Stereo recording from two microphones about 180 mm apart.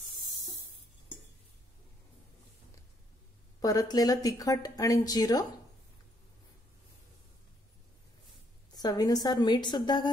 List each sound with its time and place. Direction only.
3.6 s speech: 20° left (ahead or behind)
8.7 s speech: 20° left (ahead or behind)